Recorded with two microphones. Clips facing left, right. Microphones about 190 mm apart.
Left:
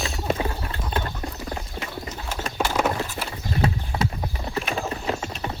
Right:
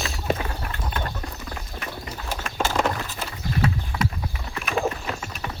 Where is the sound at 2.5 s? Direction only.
5° left (ahead or behind).